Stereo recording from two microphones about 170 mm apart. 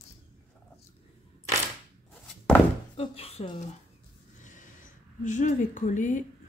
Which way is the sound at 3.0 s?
35° left (ahead or behind).